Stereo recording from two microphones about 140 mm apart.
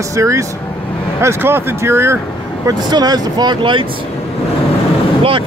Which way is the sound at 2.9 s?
30° right (ahead or behind).